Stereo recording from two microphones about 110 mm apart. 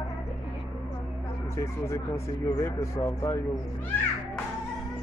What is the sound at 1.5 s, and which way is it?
Speech, 25° left (ahead or behind).